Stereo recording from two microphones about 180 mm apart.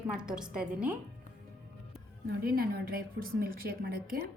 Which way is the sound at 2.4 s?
55° right (ahead or behind).